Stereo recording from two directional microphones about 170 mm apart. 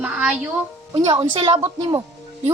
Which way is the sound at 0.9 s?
25° right (ahead or behind).